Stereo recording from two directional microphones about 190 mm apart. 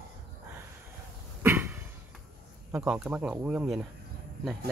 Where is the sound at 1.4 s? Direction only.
10° right (ahead or behind).